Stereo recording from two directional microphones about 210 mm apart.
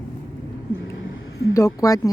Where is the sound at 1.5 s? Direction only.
15° left (ahead or behind).